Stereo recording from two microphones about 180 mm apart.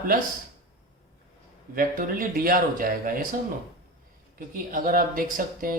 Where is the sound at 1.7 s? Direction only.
50° right (ahead or behind).